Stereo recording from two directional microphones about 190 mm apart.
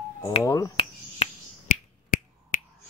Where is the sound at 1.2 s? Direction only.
35° left (ahead or behind).